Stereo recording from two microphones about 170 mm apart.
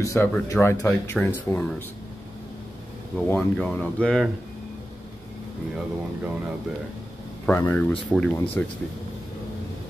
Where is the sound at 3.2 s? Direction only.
10° left (ahead or behind).